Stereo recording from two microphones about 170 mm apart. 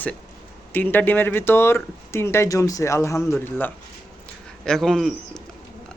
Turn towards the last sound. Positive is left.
turn(degrees=0)  # may be behind; listen again after turning